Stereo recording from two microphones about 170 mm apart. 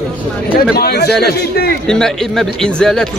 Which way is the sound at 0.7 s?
70° left (ahead or behind).